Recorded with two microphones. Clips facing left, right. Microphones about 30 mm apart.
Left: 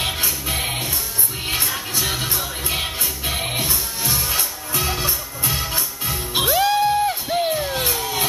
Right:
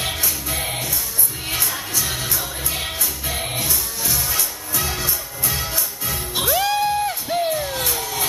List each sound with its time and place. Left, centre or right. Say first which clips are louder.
0.2 s music: left 2 dB; left
1.6 s music: left 1 dB; left
6.5 s music: left 2 dB; centre
7.5 s music: left 1 dB; centre
7.9 s a sound: left 2 dB; left